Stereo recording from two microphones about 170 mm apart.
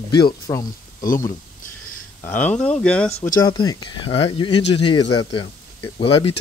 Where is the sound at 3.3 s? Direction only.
25° left (ahead or behind).